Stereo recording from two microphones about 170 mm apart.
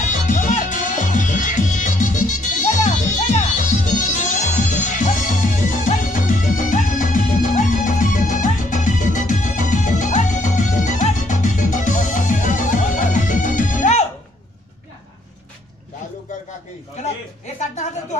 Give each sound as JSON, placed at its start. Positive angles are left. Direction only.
{"t": 0.0, "sound": "music", "side_deg": 45}